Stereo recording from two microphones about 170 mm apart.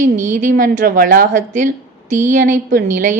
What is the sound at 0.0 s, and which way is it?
A woman's voice, 50° right (ahead or behind).